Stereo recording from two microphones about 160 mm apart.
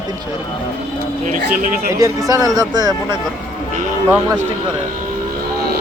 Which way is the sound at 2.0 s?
20° right (ahead or behind).